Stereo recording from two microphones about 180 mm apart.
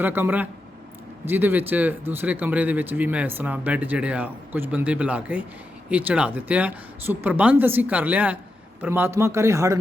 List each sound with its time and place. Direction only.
0.0 s speech: 10° right (ahead or behind)